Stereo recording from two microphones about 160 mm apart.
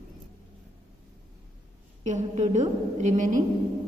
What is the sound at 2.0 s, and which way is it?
A woman's voice, 45° right (ahead or behind).